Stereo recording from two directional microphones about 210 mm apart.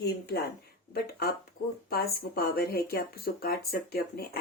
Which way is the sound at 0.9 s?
50° left (ahead or behind).